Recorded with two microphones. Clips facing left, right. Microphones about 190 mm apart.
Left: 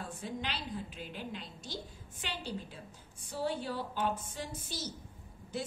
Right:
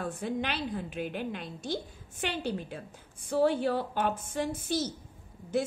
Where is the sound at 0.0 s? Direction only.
60° right (ahead or behind).